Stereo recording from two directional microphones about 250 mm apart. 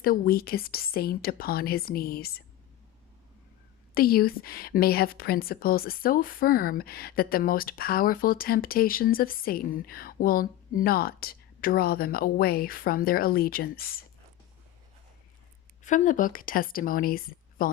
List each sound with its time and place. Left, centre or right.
0.0 s a woman's voice: left
3.9 s a woman's voice: left
15.8 s a woman's voice: left